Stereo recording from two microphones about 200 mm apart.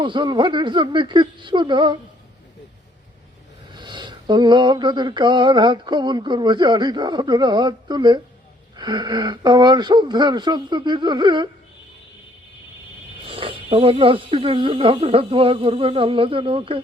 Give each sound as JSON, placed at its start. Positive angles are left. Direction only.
{"t": 0.0, "sound": "mantra", "side_deg": -25}
{"t": 3.8, "sound": "mantra", "side_deg": -20}
{"t": 13.2, "sound": "mantra", "side_deg": -25}